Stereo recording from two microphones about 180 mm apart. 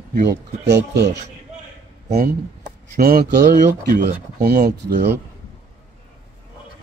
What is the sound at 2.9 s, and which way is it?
Speech, 55° right (ahead or behind).